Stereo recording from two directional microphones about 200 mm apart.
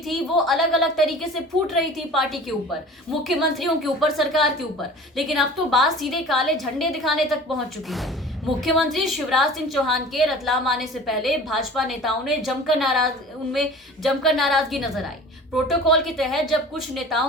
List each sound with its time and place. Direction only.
0.0 s a woman's voice: centre (ahead or behind)